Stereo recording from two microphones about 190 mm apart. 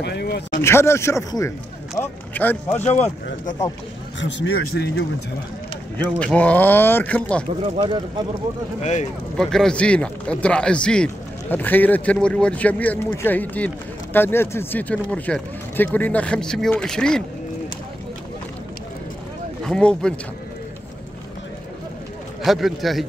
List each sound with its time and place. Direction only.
0.0 s speech: 60° left (ahead or behind)
0.6 s speech: 15° left (ahead or behind)
2.8 s speech: 35° left (ahead or behind)
4.2 s speech: 80° left
6.1 s speech: 5° left (ahead or behind)
7.4 s speech: 25° right (ahead or behind)
9.4 s speech: centre (ahead or behind)
19.6 s speech: 5° left (ahead or behind)
22.4 s speech: centre (ahead or behind)